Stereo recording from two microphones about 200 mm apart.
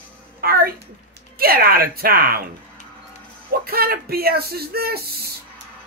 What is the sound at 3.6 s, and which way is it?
Speech, 50° right (ahead or behind).